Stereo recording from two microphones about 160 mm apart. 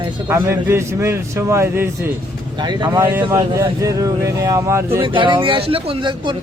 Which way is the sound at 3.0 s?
15° right (ahead or behind).